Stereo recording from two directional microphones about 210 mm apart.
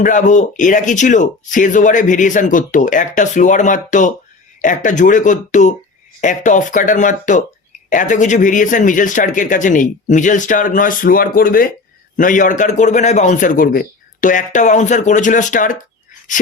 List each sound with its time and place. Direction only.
0.0 s speech: 35° left (ahead or behind)